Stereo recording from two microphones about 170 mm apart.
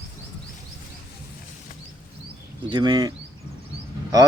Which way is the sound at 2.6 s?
25° right (ahead or behind).